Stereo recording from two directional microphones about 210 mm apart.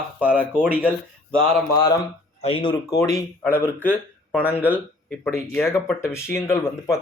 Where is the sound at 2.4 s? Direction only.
25° left (ahead or behind).